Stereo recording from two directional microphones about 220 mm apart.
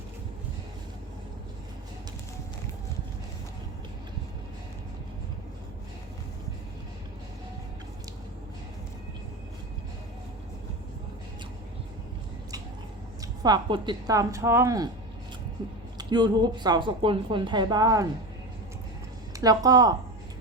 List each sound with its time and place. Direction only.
13.4 s speech: 20° right (ahead or behind)
16.0 s a woman's voice: 20° right (ahead or behind)
19.4 s speech: 15° right (ahead or behind)